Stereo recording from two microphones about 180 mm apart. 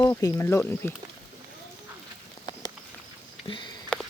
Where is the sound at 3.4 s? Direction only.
25° left (ahead or behind).